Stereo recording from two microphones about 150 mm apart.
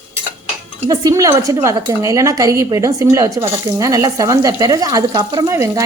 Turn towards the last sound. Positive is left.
turn(degrees=-20)  # may be behind; listen again after turning